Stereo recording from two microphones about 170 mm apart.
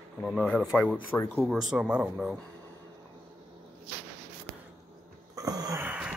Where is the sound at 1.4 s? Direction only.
Centre (ahead or behind).